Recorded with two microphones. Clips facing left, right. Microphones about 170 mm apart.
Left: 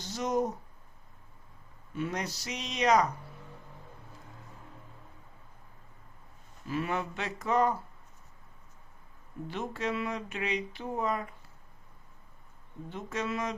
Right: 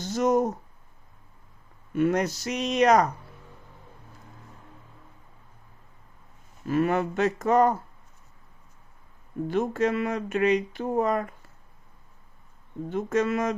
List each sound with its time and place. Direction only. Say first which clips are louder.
0.0 s speech: right 7 dB; 50° right (ahead or behind)
1.9 s speech: right 11 dB; 55° right (ahead or behind)
6.7 s speech: right 9 dB; 50° right (ahead or behind)
9.5 s speech: right 9 dB; 50° right (ahead or behind)
12.9 s speech: right 10 dB; 50° right (ahead or behind)